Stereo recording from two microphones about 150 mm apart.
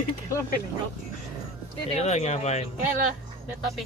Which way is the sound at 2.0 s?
45° left (ahead or behind).